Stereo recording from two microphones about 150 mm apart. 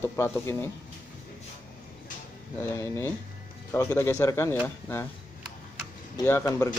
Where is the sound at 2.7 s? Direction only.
15° left (ahead or behind).